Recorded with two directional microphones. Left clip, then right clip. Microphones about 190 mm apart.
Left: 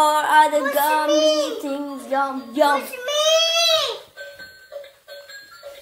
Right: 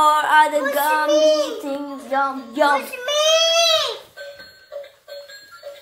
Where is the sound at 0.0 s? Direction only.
25° left (ahead or behind); by 0.9 s 10° left (ahead or behind).